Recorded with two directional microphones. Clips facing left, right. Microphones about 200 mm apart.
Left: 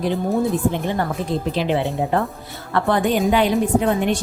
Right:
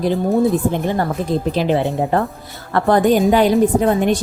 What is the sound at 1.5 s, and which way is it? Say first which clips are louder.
A woman's voice: right 3 dB; 40° right (ahead or behind).